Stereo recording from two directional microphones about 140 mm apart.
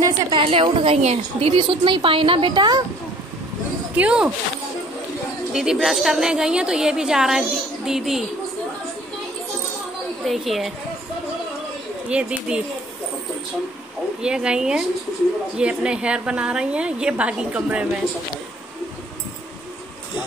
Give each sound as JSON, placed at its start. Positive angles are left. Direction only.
{"t": 0.0, "sound": "a woman's voice", "side_deg": -35}
{"t": 3.9, "sound": "speech", "side_deg": -10}
{"t": 5.5, "sound": "a woman's voice", "side_deg": -5}
{"t": 10.2, "sound": "a woman's voice", "side_deg": 0}
{"t": 12.1, "sound": "a woman's voice", "side_deg": -5}
{"t": 14.2, "sound": "a woman's voice", "side_deg": -5}